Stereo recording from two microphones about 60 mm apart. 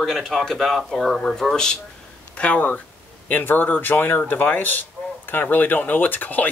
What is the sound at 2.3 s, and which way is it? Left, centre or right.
Speech, left.